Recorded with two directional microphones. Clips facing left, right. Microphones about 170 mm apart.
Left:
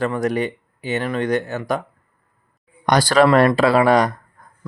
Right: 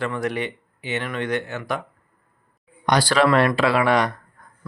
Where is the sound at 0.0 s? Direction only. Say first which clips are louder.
Left 5 dB; 40° left (ahead or behind).